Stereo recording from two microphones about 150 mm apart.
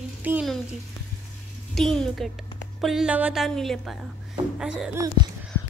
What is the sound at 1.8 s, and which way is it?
A woman's voice, centre (ahead or behind).